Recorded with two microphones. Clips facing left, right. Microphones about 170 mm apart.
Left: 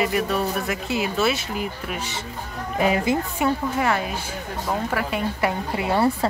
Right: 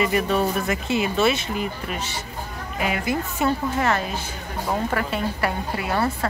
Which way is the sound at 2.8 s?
35° left (ahead or behind).